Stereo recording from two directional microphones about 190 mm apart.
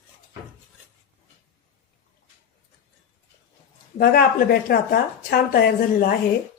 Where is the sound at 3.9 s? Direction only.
50° left (ahead or behind).